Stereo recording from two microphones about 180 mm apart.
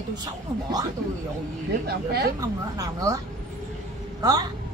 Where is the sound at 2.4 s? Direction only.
20° right (ahead or behind).